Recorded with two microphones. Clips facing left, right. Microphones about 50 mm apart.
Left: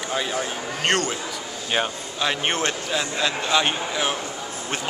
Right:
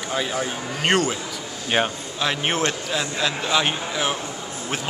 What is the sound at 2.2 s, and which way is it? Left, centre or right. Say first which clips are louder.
A man's voice: right 1 dB; centre.